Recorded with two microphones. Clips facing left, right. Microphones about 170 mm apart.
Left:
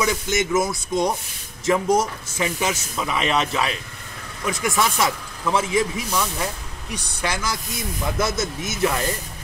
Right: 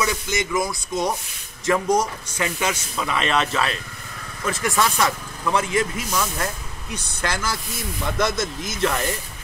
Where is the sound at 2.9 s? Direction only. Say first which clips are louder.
Right 1 dB; 15° left (ahead or behind).